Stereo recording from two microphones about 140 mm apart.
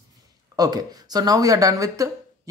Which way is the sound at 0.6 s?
30° right (ahead or behind).